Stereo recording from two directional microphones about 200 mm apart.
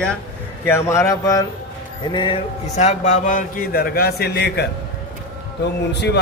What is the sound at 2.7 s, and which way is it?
A man's voice, 35° left (ahead or behind).